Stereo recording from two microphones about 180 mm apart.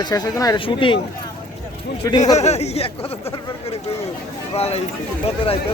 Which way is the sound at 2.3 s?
40° left (ahead or behind).